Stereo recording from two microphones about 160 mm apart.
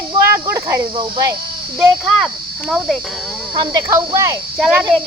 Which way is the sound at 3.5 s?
20° right (ahead or behind).